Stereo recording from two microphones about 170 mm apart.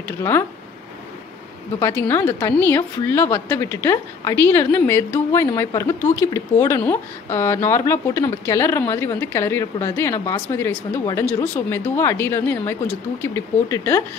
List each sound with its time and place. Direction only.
0.2 s a woman's voice: 15° left (ahead or behind)
1.8 s a woman's voice: 15° left (ahead or behind)